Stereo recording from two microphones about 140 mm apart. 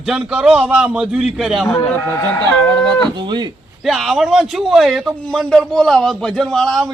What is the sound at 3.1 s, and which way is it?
Speech, 35° right (ahead or behind).